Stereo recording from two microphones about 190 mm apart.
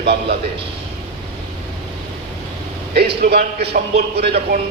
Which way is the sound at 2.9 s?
55° right (ahead or behind).